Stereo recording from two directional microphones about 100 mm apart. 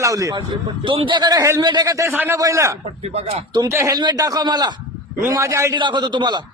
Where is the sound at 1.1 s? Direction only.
40° right (ahead or behind).